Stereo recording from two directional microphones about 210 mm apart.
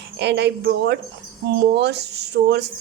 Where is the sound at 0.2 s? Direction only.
55° right (ahead or behind).